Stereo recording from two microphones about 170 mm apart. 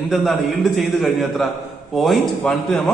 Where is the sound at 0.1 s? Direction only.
Centre (ahead or behind).